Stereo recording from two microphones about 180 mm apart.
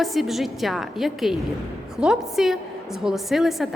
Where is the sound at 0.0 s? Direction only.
Centre (ahead or behind).